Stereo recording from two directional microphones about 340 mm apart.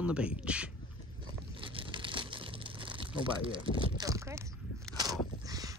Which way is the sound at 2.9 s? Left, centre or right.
Centre.